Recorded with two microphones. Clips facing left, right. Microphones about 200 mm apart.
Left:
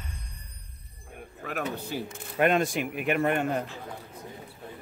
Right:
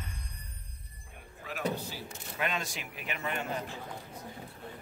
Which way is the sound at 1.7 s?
55° left (ahead or behind).